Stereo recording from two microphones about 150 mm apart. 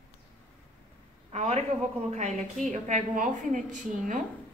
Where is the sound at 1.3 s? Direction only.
45° right (ahead or behind).